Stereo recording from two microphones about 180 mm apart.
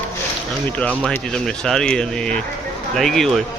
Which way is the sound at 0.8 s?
5° left (ahead or behind).